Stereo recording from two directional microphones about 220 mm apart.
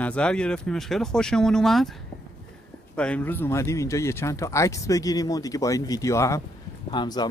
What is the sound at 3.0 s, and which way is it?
Speech, 5° left (ahead or behind).